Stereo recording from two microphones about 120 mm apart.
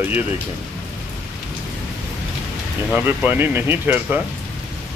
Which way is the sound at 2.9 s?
15° right (ahead or behind).